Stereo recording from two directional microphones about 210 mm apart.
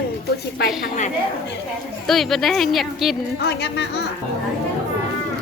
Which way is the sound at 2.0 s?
Centre (ahead or behind).